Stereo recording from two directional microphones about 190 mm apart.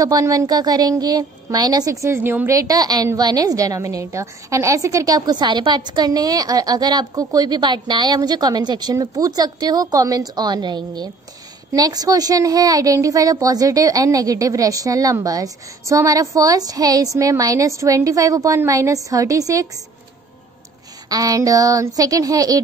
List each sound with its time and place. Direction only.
0.0 s a woman's voice: 20° right (ahead or behind)
21.1 s a woman's voice: 20° right (ahead or behind)